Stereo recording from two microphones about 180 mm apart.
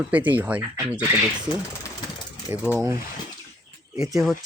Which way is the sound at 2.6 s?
10° right (ahead or behind).